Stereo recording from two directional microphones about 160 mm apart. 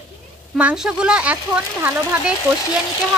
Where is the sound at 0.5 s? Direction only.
5° right (ahead or behind).